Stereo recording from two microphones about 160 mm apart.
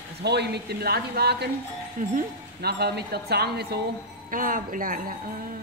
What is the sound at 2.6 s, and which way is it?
Speech, 90° right.